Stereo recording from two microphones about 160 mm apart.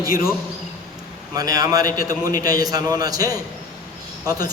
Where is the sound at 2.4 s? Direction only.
25° right (ahead or behind).